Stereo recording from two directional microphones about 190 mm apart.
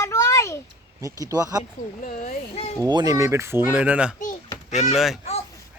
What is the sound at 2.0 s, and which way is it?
Speech, 40° left (ahead or behind).